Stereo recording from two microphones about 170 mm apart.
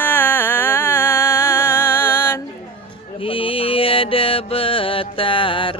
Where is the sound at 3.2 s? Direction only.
30° left (ahead or behind).